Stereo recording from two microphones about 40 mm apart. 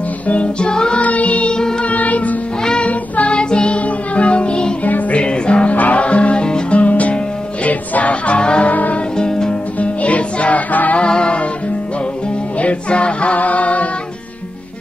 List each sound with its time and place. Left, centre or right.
0.3 s music: left
0.7 s music: centre
0.9 s music: left
1.5 s music: centre
1.9 s music: left
2.6 s music: left
2.9 s music: left
3.3 s music: left
6.8 s music: left
8.6 s music: left
9.1 s music: centre
9.5 s music: left
11.0 s music: left
12.5 s music: left